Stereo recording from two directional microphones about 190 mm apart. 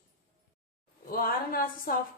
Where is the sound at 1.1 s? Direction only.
50° left (ahead or behind).